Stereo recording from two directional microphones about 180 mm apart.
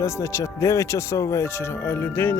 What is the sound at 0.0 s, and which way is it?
Speech, 15° left (ahead or behind).